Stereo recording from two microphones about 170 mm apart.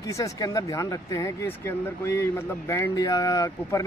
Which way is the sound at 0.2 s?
20° left (ahead or behind).